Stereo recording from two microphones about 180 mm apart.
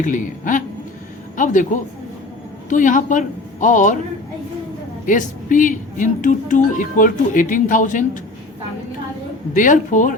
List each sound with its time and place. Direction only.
0.0 s a woman's voice: 45° left (ahead or behind)
5.0 s a woman's voice: 45° left (ahead or behind)
9.6 s a woman's voice: 45° left (ahead or behind)